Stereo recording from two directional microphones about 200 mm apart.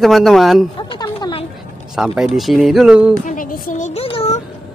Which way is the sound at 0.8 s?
25° left (ahead or behind).